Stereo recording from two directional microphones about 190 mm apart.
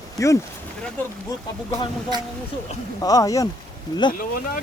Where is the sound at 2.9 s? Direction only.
20° left (ahead or behind).